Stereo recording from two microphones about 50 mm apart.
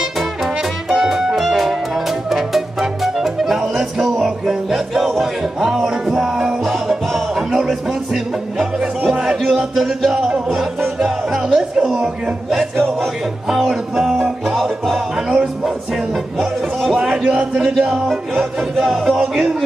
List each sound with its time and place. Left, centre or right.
0.0 s music: centre
12.4 s a sound: centre
13.5 s music: centre
15.1 s music: centre
16.9 s a sound: centre
17.7 s music: centre